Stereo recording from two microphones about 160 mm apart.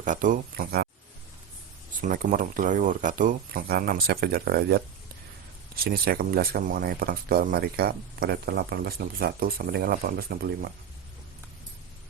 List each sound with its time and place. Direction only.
0.0 s speech: 55° right (ahead or behind)
2.0 s speech: 55° right (ahead or behind)